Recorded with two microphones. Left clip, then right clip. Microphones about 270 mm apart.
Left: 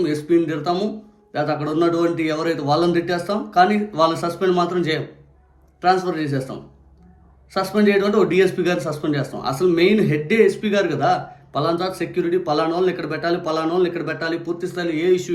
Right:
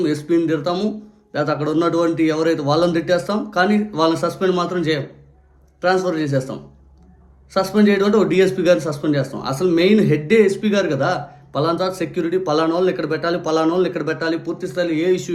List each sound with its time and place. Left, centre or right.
0.0 s a man's voice: centre